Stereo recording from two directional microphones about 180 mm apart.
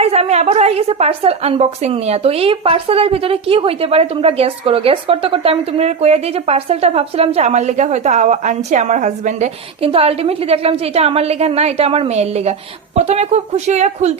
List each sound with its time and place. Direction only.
0.0 s a woman's voice: 35° right (ahead or behind)